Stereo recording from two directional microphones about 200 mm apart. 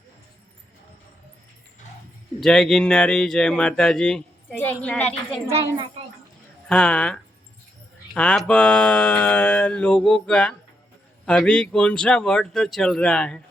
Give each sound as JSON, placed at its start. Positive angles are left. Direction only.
{"t": 2.4, "sound": "speech", "side_deg": 0}
{"t": 5.5, "sound": "speech", "side_deg": -25}
{"t": 6.7, "sound": "speech", "side_deg": 5}